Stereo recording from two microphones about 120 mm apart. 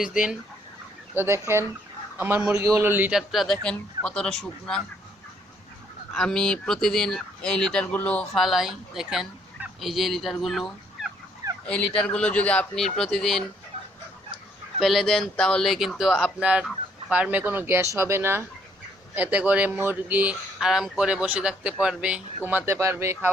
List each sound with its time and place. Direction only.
0.0 s speech: 5° right (ahead or behind)
1.1 s a man's voice: 20° right (ahead or behind)
2.5 s a man's voice: 25° right (ahead or behind)
3.1 s a man's voice: centre (ahead or behind)
6.1 s a man's voice: 5° left (ahead or behind)
14.8 s a man's voice: centre (ahead or behind); by 20.3 s 15° right (ahead or behind)
20.6 s speech: 5° right (ahead or behind); by 23.3 s 25° right (ahead or behind)